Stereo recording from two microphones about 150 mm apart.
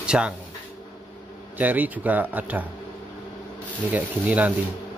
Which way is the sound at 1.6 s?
10° right (ahead or behind).